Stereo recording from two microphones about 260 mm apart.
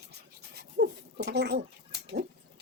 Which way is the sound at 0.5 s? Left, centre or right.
Right.